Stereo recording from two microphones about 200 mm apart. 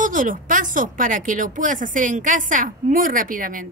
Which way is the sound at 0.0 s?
40° right (ahead or behind).